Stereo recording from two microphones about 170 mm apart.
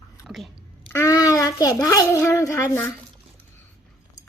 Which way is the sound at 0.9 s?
20° left (ahead or behind).